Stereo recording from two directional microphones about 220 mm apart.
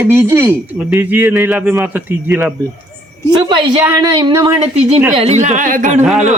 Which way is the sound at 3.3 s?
20° right (ahead or behind).